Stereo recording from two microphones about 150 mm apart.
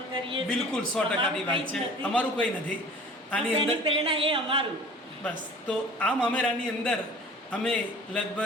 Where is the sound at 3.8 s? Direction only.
40° right (ahead or behind).